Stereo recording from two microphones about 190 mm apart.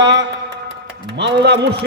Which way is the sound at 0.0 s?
70° right (ahead or behind).